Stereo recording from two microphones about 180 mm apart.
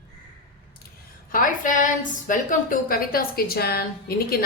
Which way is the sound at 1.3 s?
50° left (ahead or behind).